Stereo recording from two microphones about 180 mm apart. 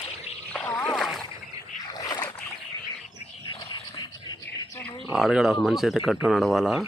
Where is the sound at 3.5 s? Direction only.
25° left (ahead or behind).